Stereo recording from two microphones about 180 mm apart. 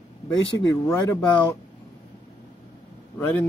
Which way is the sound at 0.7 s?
15° left (ahead or behind).